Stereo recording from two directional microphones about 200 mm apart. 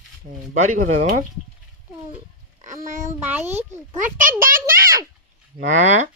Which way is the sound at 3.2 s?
10° right (ahead or behind).